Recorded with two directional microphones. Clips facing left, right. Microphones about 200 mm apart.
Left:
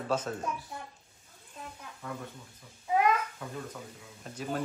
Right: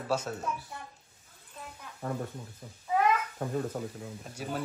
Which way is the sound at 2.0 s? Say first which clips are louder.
Right 5 dB; 45° right (ahead or behind).